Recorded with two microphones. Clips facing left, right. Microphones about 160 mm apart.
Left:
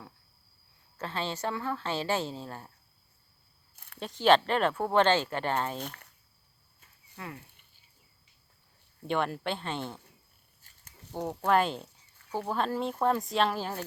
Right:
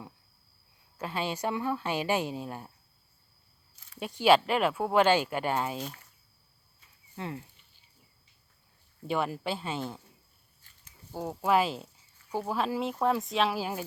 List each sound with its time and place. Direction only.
0.9 s speech: 10° right (ahead or behind)
4.0 s speech: 10° right (ahead or behind)
5.8 s speech: 60° left (ahead or behind)
7.2 s speech: 25° right (ahead or behind)
9.0 s speech: 5° right (ahead or behind)
11.3 s speech: 5° right (ahead or behind)